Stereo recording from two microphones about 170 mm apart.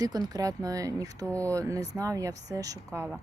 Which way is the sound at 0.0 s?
20° right (ahead or behind).